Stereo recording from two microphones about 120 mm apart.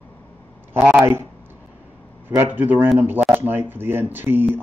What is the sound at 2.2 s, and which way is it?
Speech, 20° right (ahead or behind).